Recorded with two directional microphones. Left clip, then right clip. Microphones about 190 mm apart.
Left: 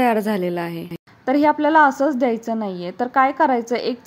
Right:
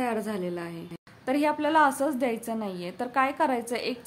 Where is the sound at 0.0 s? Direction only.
35° left (ahead or behind).